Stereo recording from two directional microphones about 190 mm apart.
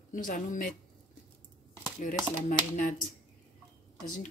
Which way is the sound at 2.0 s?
45° left (ahead or behind).